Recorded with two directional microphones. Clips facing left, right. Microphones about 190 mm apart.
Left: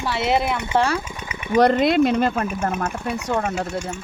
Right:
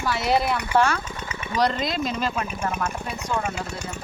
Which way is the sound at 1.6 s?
60° left (ahead or behind).